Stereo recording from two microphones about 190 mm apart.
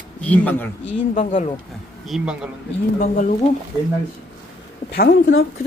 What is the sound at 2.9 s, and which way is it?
Speech, 45° left (ahead or behind).